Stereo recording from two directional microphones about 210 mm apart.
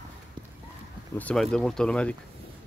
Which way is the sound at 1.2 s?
5° left (ahead or behind).